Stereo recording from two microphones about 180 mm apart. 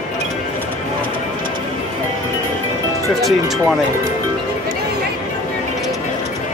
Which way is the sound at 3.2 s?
Centre (ahead or behind).